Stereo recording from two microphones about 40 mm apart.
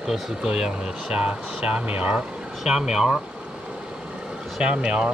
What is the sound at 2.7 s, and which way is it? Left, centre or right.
Speech, centre.